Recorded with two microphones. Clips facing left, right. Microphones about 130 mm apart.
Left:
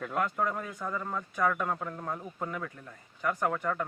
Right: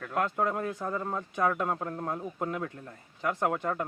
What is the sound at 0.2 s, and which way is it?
Speech, 25° right (ahead or behind).